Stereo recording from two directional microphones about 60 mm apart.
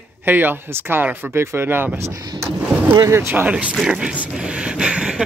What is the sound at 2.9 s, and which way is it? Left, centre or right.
Speech, right.